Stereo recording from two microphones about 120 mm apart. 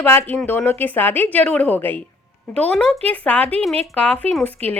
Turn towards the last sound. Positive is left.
turn(degrees=15)  # may be behind; listen again after turning